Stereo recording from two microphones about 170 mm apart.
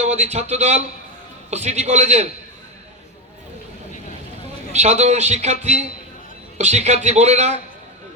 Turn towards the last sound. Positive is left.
turn(degrees=-40)  # may be behind; listen again after turning